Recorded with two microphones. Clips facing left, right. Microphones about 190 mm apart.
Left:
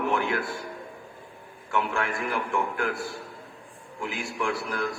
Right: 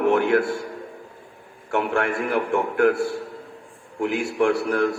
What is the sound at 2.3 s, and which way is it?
Speech, 45° right (ahead or behind).